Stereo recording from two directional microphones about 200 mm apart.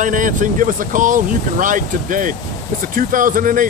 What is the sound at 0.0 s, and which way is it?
Speech, 40° right (ahead or behind).